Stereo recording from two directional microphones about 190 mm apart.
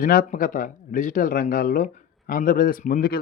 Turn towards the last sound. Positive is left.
turn(degrees=50)  # may be behind; listen again after turning